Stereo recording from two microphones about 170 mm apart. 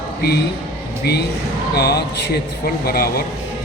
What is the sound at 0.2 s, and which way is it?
A man's voice, 70° left (ahead or behind).